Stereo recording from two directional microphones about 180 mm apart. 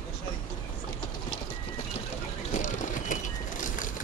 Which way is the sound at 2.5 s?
40° left (ahead or behind).